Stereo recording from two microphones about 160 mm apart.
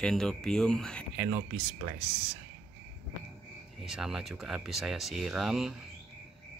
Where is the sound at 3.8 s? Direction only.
5° right (ahead or behind).